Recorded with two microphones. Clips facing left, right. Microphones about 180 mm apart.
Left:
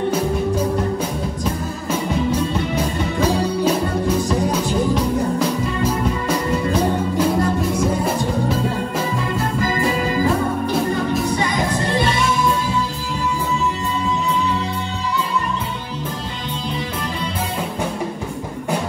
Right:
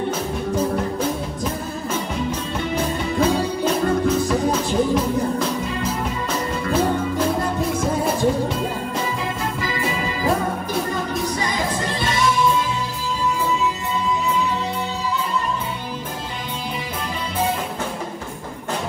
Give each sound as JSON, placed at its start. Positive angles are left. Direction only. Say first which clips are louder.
{"t": 9.6, "sound": "music", "louder": "left 7 dB", "side_deg": 45}